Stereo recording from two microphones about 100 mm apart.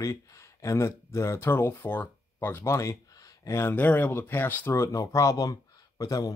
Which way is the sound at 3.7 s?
15° left (ahead or behind).